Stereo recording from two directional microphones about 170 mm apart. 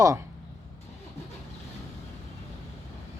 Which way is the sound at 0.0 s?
20° right (ahead or behind).